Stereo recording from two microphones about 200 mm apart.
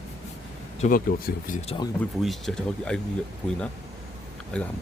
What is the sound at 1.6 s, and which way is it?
Speech, 25° left (ahead or behind).